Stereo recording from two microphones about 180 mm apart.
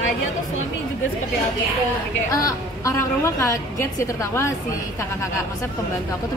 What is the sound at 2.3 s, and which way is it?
A woman's voice, 20° left (ahead or behind).